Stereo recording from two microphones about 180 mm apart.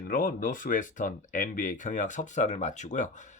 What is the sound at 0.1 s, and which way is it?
Speech, 50° left (ahead or behind).